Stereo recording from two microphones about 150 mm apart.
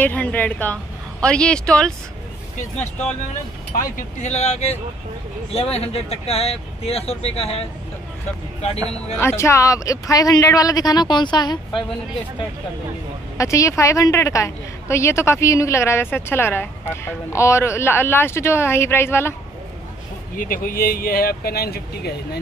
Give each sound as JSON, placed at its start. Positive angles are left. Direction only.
{"t": 0.0, "sound": "a woman's voice", "side_deg": 10}
{"t": 3.7, "sound": "speech", "side_deg": 65}
{"t": 9.2, "sound": "speech", "side_deg": 20}
{"t": 13.4, "sound": "a woman's voice", "side_deg": 20}
{"t": 20.3, "sound": "speech", "side_deg": 70}